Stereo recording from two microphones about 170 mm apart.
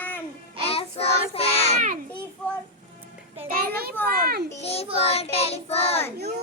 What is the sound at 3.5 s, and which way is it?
Children playing, 60° right (ahead or behind).